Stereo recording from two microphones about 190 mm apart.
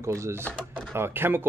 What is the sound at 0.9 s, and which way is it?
Speech, 10° right (ahead or behind).